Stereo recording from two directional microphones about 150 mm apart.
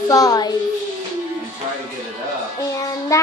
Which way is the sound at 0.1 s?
25° left (ahead or behind).